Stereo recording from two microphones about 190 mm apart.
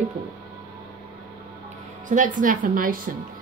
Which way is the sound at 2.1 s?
45° right (ahead or behind).